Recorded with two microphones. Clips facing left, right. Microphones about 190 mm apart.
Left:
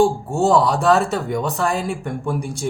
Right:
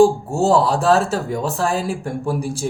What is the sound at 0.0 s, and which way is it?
Speech, centre (ahead or behind).